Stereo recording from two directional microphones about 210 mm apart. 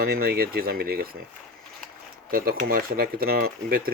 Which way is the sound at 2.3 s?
45° right (ahead or behind).